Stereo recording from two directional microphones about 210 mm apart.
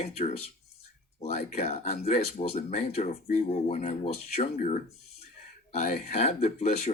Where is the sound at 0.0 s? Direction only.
30° left (ahead or behind).